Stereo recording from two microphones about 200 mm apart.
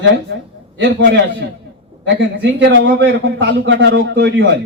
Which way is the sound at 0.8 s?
65° right (ahead or behind).